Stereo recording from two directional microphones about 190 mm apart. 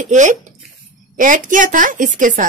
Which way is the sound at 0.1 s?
40° right (ahead or behind).